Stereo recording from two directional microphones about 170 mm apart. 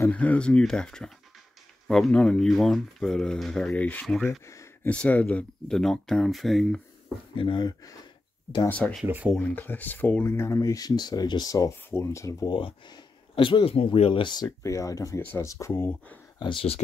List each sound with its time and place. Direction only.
0.0 s speech: 10° left (ahead or behind)
4.5 s a sound: 15° left (ahead or behind)
4.9 s speech: 5° left (ahead or behind)
7.3 s speech: 30° left (ahead or behind)
8.6 s speech: 10° left (ahead or behind)
9.0 s speech: 10° right (ahead or behind)
9.3 s speech: 10° left (ahead or behind)
16.3 s speech: 30° left (ahead or behind)